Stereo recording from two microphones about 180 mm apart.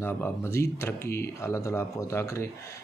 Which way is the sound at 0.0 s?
15° left (ahead or behind).